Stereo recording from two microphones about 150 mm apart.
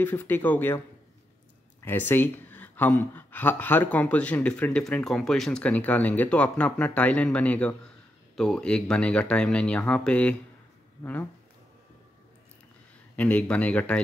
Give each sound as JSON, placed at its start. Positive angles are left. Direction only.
{"t": 0.0, "sound": "speech", "side_deg": 15}
{"t": 1.9, "sound": "speech", "side_deg": 15}
{"t": 13.1, "sound": "speech", "side_deg": 10}